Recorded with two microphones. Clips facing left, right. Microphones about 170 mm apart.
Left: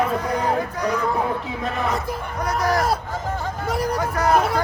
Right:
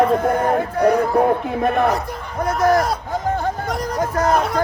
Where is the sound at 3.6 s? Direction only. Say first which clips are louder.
Left 1 dB; 10° left (ahead or behind).